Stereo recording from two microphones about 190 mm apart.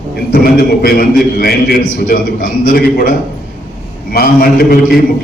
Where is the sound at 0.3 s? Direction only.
50° left (ahead or behind).